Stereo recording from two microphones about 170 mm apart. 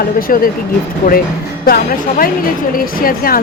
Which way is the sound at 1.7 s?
60° left (ahead or behind).